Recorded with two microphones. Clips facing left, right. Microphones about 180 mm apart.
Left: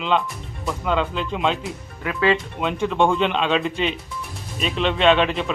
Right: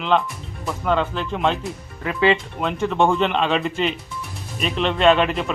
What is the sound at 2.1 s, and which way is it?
Speech, 25° right (ahead or behind).